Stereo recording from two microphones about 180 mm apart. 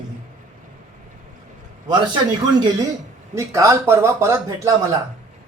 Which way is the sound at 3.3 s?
15° right (ahead or behind).